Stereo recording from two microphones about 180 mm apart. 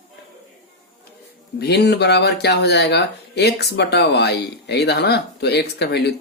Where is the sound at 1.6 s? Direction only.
65° left (ahead or behind).